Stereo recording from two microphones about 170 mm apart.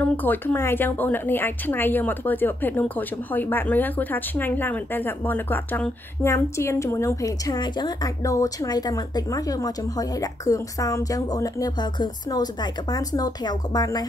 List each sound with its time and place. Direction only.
0.0 s a woman's voice: 10° left (ahead or behind)